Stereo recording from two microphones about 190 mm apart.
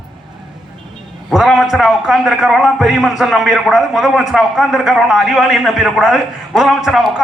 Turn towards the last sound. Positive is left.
turn(degrees=-5)  # may be behind; listen again after turning